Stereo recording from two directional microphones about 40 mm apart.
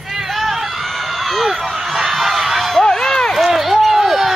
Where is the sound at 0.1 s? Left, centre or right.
Centre.